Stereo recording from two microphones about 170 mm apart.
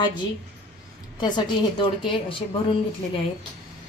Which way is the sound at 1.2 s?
25° left (ahead or behind).